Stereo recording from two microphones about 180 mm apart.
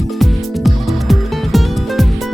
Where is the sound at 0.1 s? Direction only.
Centre (ahead or behind).